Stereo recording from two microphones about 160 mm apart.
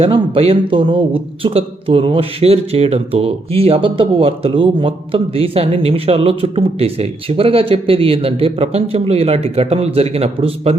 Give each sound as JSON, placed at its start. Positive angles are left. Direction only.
{"t": 0.0, "sound": "a man's voice", "side_deg": -35}